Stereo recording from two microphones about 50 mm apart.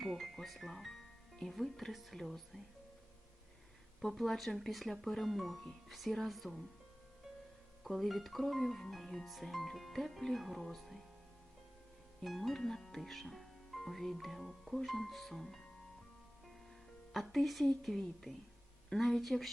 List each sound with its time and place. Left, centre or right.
0.0 s speech: centre
4.0 s speech: centre
7.9 s speech: centre
12.2 s speech: centre
17.1 s speech: centre